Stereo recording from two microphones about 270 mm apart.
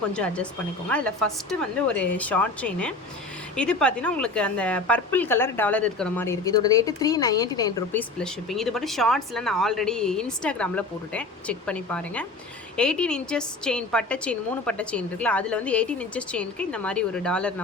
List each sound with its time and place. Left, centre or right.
0.1 s a woman's voice: centre
8.2 s a woman's voice: centre